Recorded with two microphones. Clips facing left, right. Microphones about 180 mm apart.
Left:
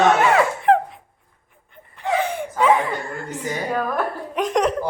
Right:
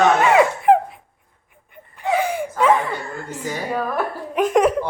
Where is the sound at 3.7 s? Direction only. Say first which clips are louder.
Even; 5° right (ahead or behind).